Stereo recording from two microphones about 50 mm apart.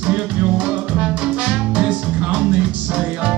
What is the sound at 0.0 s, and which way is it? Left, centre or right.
Music, right.